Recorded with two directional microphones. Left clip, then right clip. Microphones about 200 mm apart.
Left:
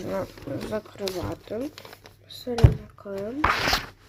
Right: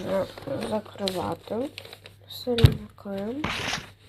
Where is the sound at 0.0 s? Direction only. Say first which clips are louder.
Right 3 dB; 30° left (ahead or behind).